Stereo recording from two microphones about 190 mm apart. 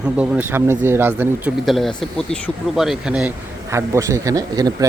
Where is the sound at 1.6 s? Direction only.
Centre (ahead or behind).